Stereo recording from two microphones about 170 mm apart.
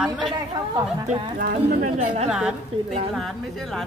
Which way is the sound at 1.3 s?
55° right (ahead or behind).